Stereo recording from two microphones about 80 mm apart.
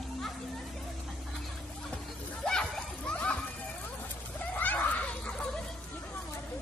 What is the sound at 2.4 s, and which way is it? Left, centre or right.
Splash, centre.